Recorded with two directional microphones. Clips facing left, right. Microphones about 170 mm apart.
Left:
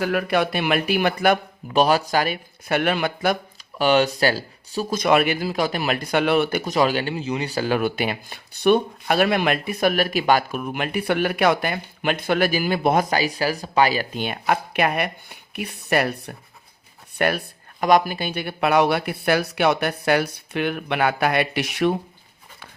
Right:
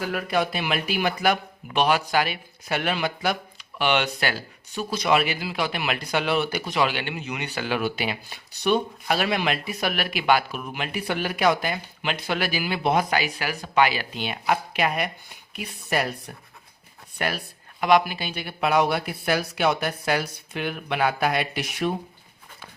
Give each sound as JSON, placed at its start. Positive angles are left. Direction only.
{"t": 0.0, "sound": "speech", "side_deg": 65}
{"t": 1.7, "sound": "speech", "side_deg": 35}
{"t": 3.8, "sound": "speech", "side_deg": 40}